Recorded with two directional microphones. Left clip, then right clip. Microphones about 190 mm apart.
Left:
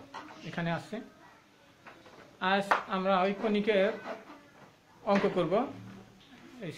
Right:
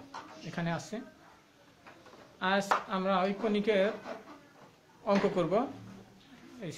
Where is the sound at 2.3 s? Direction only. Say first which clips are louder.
Left 1 dB; 5° right (ahead or behind).